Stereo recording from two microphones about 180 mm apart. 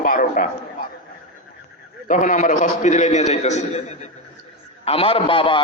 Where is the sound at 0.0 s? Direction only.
50° left (ahead or behind).